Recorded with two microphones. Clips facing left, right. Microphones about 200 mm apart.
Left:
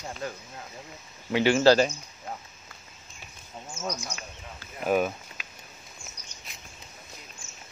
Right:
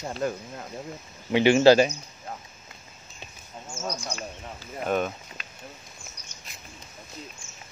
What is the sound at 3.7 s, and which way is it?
Speech, 30° right (ahead or behind).